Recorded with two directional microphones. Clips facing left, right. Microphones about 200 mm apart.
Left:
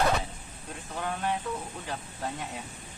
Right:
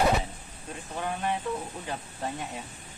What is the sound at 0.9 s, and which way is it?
Speech, 5° right (ahead or behind).